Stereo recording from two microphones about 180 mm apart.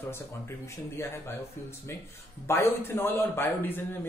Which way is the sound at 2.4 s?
15° left (ahead or behind).